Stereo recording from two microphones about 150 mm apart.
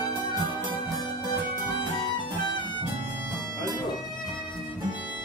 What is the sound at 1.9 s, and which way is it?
Music, 30° left (ahead or behind).